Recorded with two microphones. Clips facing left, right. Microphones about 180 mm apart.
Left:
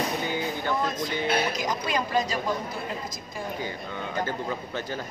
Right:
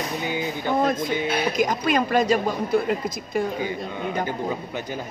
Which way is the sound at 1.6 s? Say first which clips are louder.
Right 7 dB; 55° right (ahead or behind).